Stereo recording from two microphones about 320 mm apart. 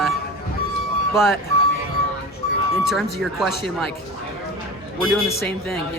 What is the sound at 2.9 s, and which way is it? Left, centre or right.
Speech, centre.